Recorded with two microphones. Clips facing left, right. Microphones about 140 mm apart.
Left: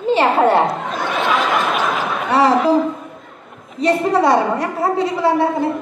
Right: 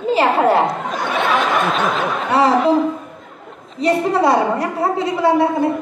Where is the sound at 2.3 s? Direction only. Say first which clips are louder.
Even; centre (ahead or behind).